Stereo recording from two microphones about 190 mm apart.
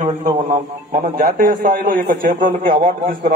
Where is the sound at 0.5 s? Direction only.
50° right (ahead or behind).